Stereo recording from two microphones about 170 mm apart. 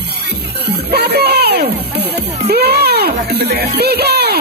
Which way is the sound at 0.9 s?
70° right (ahead or behind).